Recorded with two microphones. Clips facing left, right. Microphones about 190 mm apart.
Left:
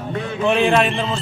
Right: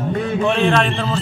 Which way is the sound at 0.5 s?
10° left (ahead or behind).